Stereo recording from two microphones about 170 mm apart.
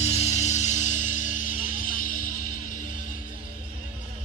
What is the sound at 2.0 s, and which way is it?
Music, 50° left (ahead or behind).